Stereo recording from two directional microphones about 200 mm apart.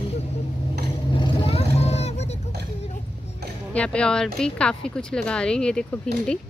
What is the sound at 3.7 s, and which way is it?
Speech, 5° left (ahead or behind).